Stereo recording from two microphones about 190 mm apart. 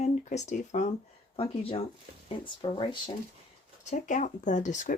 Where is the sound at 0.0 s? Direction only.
40° left (ahead or behind).